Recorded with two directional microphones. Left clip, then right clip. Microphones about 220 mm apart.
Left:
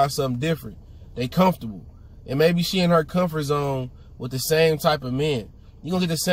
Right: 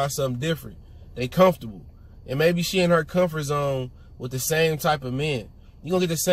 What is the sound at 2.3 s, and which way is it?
Speech, 10° left (ahead or behind).